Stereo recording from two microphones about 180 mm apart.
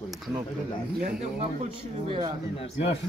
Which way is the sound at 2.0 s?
25° right (ahead or behind).